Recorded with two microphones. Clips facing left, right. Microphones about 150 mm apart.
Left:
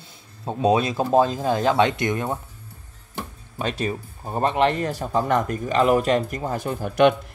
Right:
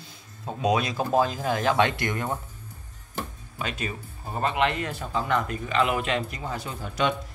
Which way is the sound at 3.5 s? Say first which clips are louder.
Left 6 dB; 35° left (ahead or behind).